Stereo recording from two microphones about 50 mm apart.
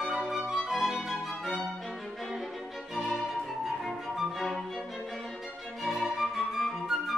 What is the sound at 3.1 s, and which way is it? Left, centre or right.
Music, centre.